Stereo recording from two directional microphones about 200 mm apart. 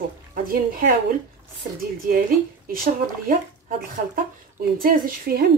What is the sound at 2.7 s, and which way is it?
Speech, 45° right (ahead or behind).